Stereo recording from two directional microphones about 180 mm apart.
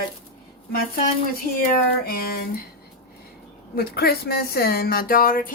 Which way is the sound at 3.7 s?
60° left (ahead or behind).